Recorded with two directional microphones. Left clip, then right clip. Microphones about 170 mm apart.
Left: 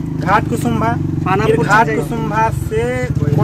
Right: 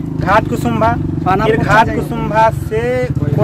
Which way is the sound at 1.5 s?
20° right (ahead or behind).